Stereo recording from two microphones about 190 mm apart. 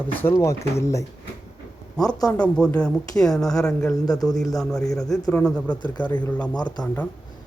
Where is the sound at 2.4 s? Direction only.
5° left (ahead or behind).